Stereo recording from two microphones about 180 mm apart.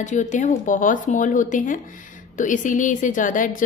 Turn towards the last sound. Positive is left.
turn(degrees=45)  # may be behind; listen again after turning